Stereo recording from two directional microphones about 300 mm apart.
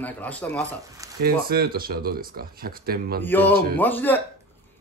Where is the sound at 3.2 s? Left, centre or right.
Centre.